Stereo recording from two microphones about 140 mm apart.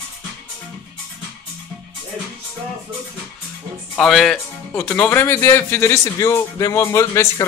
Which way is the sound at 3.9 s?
5° left (ahead or behind).